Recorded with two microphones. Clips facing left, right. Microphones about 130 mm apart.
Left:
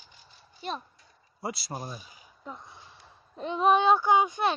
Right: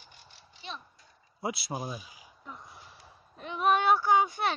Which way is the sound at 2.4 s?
25° left (ahead or behind).